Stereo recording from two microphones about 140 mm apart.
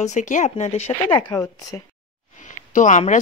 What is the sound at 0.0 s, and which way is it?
Speech, 60° left (ahead or behind).